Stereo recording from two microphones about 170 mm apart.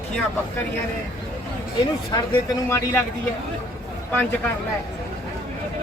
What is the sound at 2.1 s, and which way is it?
Speech, 20° left (ahead or behind).